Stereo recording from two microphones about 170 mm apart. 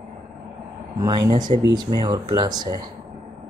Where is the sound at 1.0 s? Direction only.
25° right (ahead or behind).